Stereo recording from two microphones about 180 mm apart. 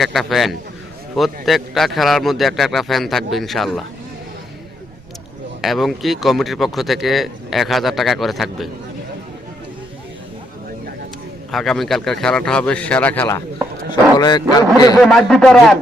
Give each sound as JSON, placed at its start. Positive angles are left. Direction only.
{"t": 0.0, "sound": "speech", "side_deg": 0}
{"t": 5.6, "sound": "speech", "side_deg": 0}
{"t": 11.5, "sound": "speech", "side_deg": 0}
{"t": 13.9, "sound": "speech", "side_deg": 25}
{"t": 14.9, "sound": "speech", "side_deg": 0}